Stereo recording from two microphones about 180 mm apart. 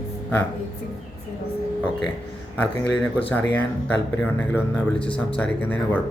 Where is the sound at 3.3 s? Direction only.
10° left (ahead or behind).